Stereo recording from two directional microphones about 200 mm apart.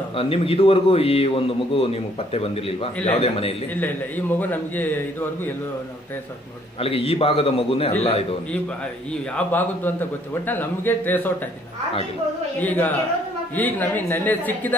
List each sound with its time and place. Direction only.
0.1 s a man's voice: 30° left (ahead or behind)
4.4 s a man's voice: 10° left (ahead or behind)
6.8 s a man's voice: 30° left (ahead or behind)
9.5 s a man's voice: 10° left (ahead or behind)
12.5 s a man's voice: 10° left (ahead or behind)